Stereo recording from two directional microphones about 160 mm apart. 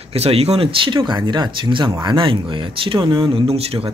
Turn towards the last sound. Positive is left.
turn(degrees=-40)  # may be behind; listen again after turning